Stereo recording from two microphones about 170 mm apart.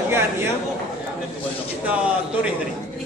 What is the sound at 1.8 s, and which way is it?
Speech, 5° right (ahead or behind).